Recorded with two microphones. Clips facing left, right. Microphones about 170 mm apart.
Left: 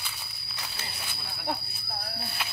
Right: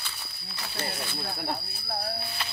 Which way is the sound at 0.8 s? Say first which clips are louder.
Right 8 dB; 50° right (ahead or behind).